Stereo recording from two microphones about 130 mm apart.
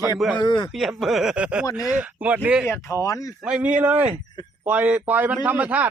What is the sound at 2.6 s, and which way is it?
Speech, 20° left (ahead or behind).